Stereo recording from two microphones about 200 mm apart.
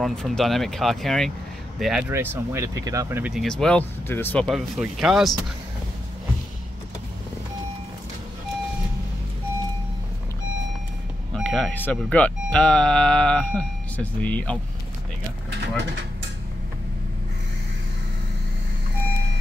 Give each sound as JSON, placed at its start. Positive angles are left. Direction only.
{"t": 0.0, "sound": "speech", "side_deg": 5}
{"t": 11.3, "sound": "speech", "side_deg": 5}
{"t": 15.6, "sound": "speech", "side_deg": -60}